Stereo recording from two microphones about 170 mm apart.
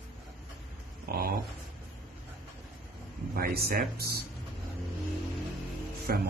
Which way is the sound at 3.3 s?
65° right (ahead or behind).